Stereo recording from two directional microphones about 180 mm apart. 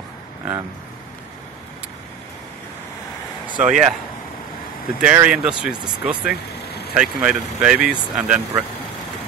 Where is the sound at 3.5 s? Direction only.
45° right (ahead or behind).